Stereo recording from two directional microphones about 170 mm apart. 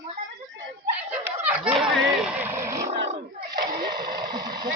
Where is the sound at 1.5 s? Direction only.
5° right (ahead or behind).